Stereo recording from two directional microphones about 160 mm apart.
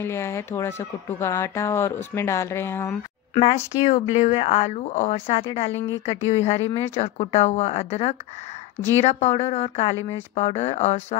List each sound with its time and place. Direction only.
0.0 s speech: 15° left (ahead or behind)
3.3 s speech: 40° left (ahead or behind)